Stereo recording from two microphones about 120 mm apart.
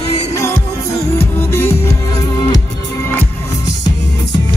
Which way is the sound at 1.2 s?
20° left (ahead or behind).